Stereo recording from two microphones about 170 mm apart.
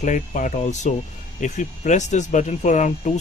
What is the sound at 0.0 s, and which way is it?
Speech, 45° left (ahead or behind).